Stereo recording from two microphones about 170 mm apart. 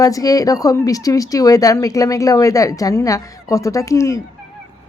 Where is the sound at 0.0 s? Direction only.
20° left (ahead or behind).